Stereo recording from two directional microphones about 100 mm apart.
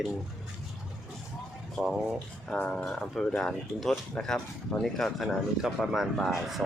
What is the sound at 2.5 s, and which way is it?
Speech, 10° left (ahead or behind).